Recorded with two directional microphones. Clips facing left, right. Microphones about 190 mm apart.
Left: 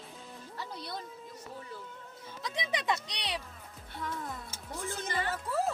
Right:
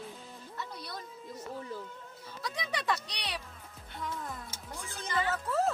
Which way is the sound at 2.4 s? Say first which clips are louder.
Left 1 dB; 20° left (ahead or behind).